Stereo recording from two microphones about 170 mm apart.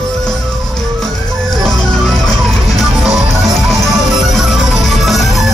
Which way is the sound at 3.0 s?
Centre (ahead or behind).